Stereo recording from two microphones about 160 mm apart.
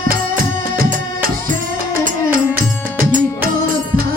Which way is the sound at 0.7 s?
65° right (ahead or behind).